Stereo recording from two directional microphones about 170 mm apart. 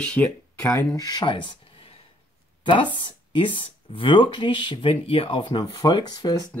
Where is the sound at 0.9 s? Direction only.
20° left (ahead or behind).